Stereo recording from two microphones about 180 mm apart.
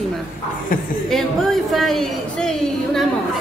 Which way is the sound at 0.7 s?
50° left (ahead or behind).